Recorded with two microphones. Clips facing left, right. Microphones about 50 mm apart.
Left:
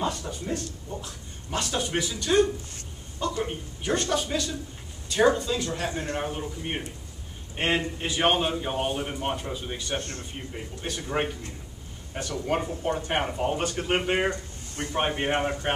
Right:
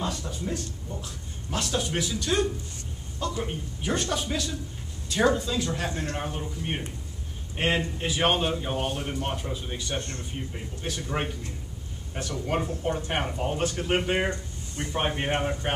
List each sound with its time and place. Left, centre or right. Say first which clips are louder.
0.0 s a man's voice: left 2 dB; centre